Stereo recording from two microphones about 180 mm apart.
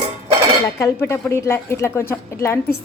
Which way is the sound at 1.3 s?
15° left (ahead or behind).